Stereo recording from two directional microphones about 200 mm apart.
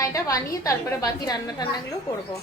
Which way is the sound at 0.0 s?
15° left (ahead or behind).